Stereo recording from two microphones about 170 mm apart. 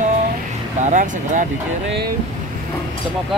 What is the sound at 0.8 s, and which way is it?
Speech, 50° right (ahead or behind).